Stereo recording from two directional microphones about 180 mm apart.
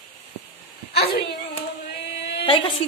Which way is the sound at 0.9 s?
60° left (ahead or behind).